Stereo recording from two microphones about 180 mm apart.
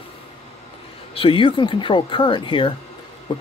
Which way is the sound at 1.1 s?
30° left (ahead or behind).